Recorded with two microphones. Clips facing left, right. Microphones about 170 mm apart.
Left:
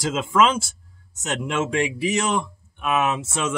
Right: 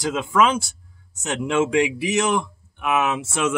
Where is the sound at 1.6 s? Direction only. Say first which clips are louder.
Right 4 dB; 15° right (ahead or behind).